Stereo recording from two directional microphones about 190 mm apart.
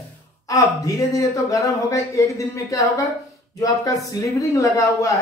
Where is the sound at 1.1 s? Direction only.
15° left (ahead or behind).